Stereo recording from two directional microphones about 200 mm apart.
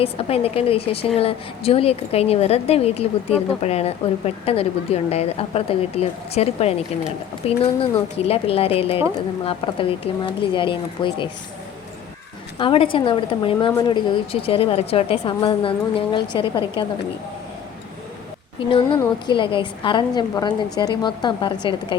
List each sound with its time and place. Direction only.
0.0 s a woman's voice: 30° left (ahead or behind)
12.5 s a woman's voice: 25° left (ahead or behind)
18.7 s a woman's voice: 25° left (ahead or behind)